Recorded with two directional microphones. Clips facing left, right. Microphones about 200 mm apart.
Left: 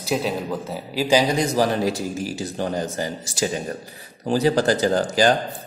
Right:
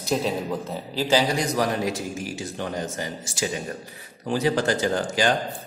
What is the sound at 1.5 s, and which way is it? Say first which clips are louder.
A man's voice: left 4 dB; 35° left (ahead or behind).